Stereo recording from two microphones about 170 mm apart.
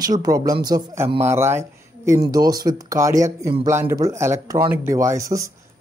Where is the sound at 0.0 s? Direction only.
20° right (ahead or behind).